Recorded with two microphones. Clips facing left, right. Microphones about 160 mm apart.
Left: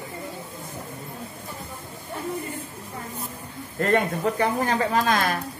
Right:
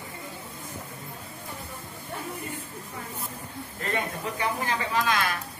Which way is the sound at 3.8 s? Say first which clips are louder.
Left 9 dB; 50° left (ahead or behind).